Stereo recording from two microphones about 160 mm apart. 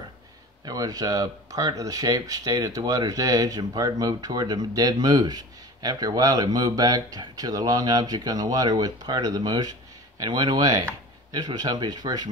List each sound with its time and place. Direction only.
0.7 s speech: 25° right (ahead or behind)